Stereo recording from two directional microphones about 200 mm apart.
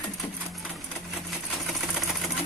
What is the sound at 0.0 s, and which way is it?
Sewing machine, centre (ahead or behind).